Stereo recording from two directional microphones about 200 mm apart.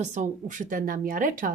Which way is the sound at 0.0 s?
35° right (ahead or behind).